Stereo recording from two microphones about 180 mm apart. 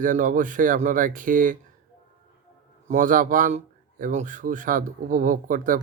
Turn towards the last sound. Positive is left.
turn(degrees=-50)  # may be behind; listen again after turning